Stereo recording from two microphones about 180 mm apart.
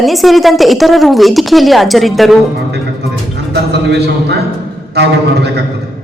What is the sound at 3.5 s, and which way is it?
Speech, 65° right (ahead or behind).